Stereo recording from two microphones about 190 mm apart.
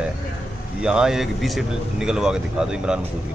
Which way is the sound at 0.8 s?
5° right (ahead or behind).